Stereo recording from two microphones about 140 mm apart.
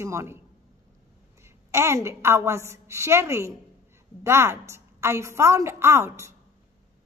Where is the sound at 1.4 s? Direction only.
20° right (ahead or behind).